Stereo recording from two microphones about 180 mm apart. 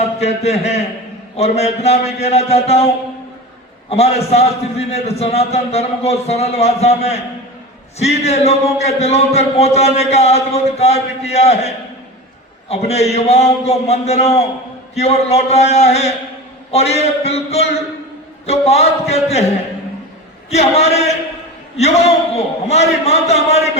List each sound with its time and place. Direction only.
0.2 s speech: 35° left (ahead or behind)
20.5 s speech: 35° left (ahead or behind)